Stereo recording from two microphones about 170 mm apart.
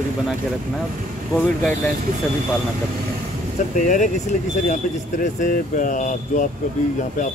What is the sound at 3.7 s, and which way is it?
Speech, 50° left (ahead or behind).